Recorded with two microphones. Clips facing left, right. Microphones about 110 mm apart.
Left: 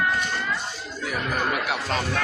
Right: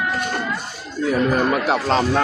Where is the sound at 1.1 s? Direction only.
30° right (ahead or behind).